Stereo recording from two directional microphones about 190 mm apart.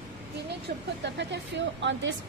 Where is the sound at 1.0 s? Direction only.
65° right (ahead or behind).